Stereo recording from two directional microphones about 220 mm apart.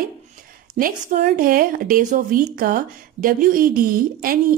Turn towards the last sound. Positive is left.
turn(degrees=-40)  # may be behind; listen again after turning